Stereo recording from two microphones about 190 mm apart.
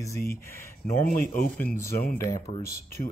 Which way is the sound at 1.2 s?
50° left (ahead or behind).